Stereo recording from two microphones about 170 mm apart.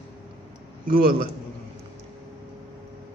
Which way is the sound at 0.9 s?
60° right (ahead or behind).